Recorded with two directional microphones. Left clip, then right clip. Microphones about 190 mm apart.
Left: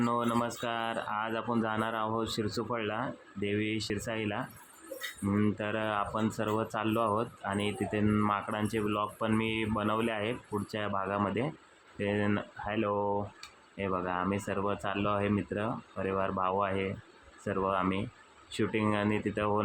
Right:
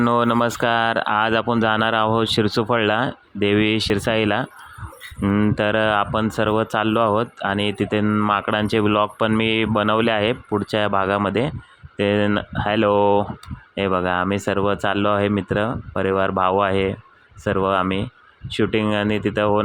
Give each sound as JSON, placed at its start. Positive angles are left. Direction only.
{"t": 0.0, "sound": "speech", "side_deg": -40}
{"t": 8.3, "sound": "speech", "side_deg": -40}